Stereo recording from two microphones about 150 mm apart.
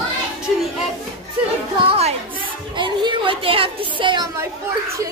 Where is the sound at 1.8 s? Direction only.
40° right (ahead or behind).